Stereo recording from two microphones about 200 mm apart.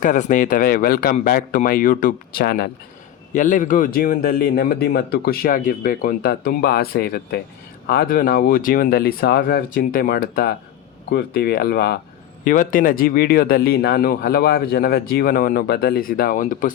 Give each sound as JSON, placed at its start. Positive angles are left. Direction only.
{"t": 0.0, "sound": "speech", "side_deg": 40}
{"t": 3.3, "sound": "speech", "side_deg": 40}